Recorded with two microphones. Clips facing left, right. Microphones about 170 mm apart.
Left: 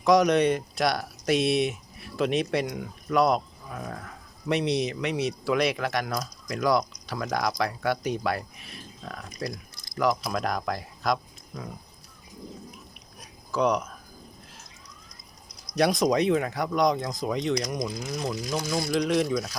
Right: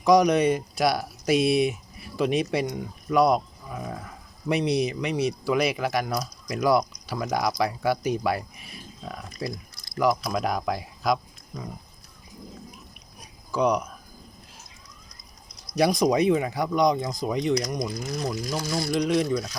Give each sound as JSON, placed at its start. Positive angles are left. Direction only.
{"t": 0.0, "sound": "speech", "side_deg": 0}
{"t": 13.1, "sound": "a sound", "side_deg": 0}
{"t": 15.7, "sound": "speech", "side_deg": 0}